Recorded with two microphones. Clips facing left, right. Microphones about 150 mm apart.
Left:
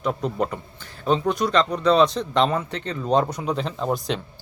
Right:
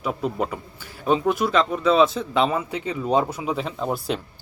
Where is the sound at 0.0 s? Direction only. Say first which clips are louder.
Left 1 dB; 5° right (ahead or behind).